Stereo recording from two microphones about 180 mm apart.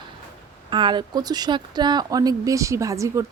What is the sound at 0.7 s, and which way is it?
Speech, 25° right (ahead or behind).